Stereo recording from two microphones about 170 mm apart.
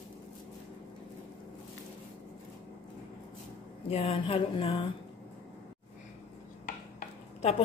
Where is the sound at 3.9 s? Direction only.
35° left (ahead or behind).